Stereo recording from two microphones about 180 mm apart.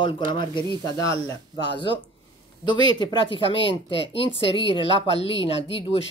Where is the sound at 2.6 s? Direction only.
25° left (ahead or behind).